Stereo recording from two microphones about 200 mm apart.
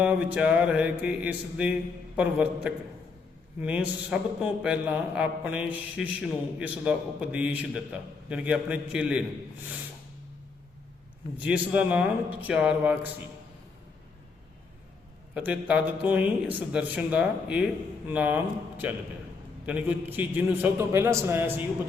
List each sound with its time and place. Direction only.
0.0 s a man's voice: 5° right (ahead or behind)
11.4 s a man's voice: 5° right (ahead or behind)
15.4 s a man's voice: 5° right (ahead or behind)